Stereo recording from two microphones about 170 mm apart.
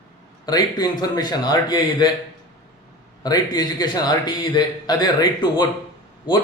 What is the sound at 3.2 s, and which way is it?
A man's voice, 25° left (ahead or behind).